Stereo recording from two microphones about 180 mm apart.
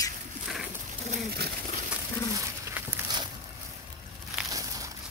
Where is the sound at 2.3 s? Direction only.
15° right (ahead or behind).